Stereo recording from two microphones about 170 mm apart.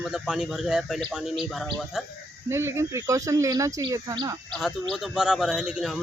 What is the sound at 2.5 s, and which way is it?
Speech, 15° right (ahead or behind).